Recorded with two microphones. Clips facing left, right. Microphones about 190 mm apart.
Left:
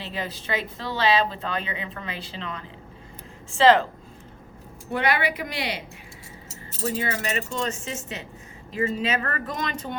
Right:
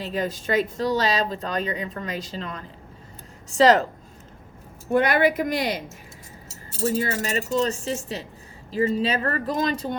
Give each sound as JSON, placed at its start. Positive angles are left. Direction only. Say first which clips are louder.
{"t": 0.0, "sound": "speech", "louder": "right 6 dB", "side_deg": -45}
{"t": 4.9, "sound": "speech", "louder": "right 5 dB", "side_deg": -45}
{"t": 6.5, "sound": "speech", "louder": "right 4 dB", "side_deg": -35}